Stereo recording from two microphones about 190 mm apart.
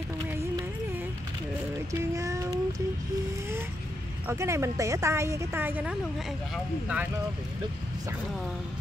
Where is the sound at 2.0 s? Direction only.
15° right (ahead or behind).